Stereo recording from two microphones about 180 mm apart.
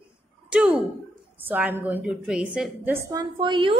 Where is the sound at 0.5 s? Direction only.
10° right (ahead or behind).